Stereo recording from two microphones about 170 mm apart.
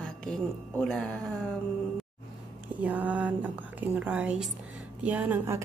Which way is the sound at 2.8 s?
10° right (ahead or behind).